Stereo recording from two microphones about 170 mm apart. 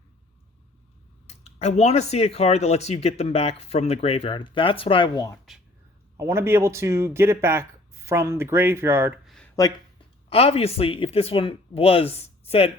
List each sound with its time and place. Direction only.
1.3 s speech: 40° left (ahead or behind); by 5.4 s 20° left (ahead or behind)
6.1 s speech: 15° right (ahead or behind)
9.2 s a sound: centre (ahead or behind)
10.2 s speech: 35° left (ahead or behind)